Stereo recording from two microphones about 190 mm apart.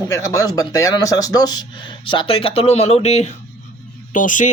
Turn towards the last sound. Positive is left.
turn(degrees=40)  # may be behind; listen again after turning